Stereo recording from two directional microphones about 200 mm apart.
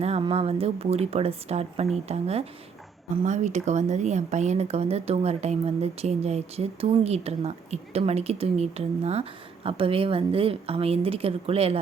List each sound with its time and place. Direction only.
0.0 s a woman's voice: 30° right (ahead or behind)